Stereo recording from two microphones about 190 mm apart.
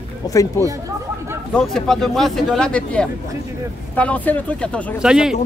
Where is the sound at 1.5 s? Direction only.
Centre (ahead or behind).